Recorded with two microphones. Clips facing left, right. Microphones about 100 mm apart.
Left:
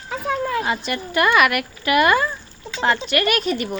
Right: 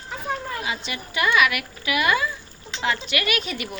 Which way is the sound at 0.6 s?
50° left (ahead or behind).